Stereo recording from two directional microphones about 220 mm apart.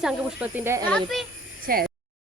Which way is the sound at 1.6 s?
40° right (ahead or behind).